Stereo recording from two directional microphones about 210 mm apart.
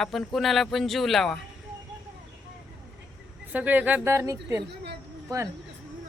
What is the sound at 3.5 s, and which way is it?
Speech, 10° right (ahead or behind).